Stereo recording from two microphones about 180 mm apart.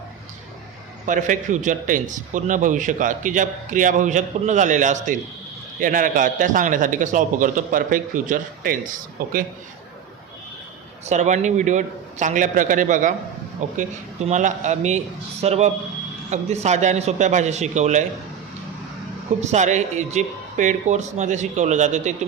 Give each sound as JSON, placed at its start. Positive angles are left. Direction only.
{"t": 1.0, "sound": "a man's voice", "side_deg": -45}
{"t": 11.0, "sound": "a man's voice", "side_deg": -40}
{"t": 19.4, "sound": "speech", "side_deg": -40}